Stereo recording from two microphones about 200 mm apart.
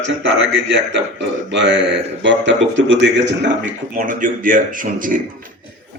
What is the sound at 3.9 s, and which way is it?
Speech, 40° right (ahead or behind).